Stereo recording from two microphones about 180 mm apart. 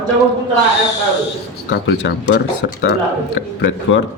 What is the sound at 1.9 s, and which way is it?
Speech, 85° left.